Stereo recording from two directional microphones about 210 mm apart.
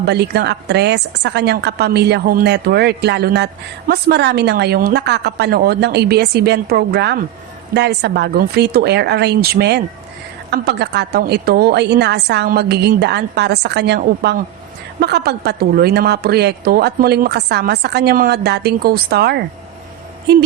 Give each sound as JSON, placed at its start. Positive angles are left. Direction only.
{"t": 0.0, "sound": "a woman's voice", "side_deg": -50}